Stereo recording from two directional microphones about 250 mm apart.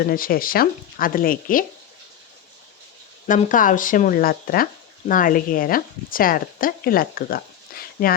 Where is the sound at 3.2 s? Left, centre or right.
Left.